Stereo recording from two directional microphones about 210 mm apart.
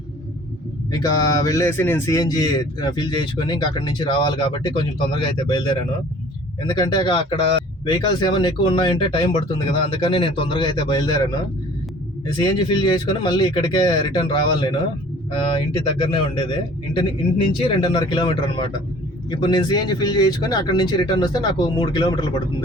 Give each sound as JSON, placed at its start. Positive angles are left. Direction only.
{"t": 0.9, "sound": "speech", "side_deg": 20}
{"t": 12.4, "sound": "speech", "side_deg": 20}
{"t": 17.6, "sound": "speech", "side_deg": 20}